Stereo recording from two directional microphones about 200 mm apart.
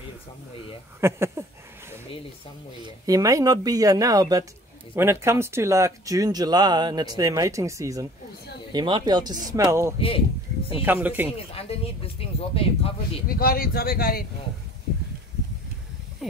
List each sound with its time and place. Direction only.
1.0 s speech: 15° right (ahead or behind)
3.1 s speech: 15° right (ahead or behind)
9.9 s speech: 30° left (ahead or behind)
10.9 s speech: 10° right (ahead or behind)
11.2 s speech: 30° left (ahead or behind)
13.3 s speech: 45° left (ahead or behind)
16.2 s speech: centre (ahead or behind)